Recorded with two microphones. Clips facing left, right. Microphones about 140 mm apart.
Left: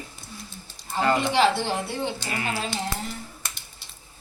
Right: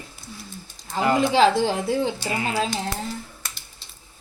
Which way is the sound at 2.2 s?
15° right (ahead or behind).